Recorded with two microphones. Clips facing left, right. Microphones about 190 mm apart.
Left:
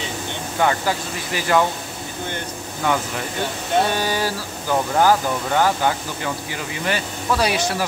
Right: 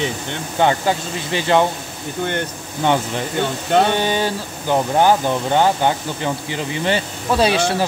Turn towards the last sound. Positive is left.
turn(degrees=-25)  # may be behind; listen again after turning